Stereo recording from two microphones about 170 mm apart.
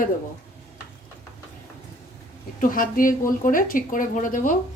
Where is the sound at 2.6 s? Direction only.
55° left (ahead or behind).